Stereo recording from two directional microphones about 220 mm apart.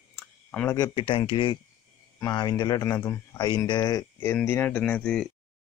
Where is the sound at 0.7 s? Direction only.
20° left (ahead or behind); by 5.3 s 5° left (ahead or behind).